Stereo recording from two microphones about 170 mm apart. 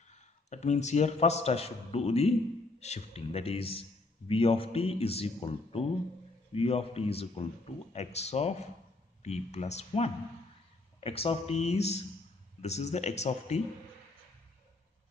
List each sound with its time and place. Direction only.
0.1 s a man's voice: 45° left (ahead or behind)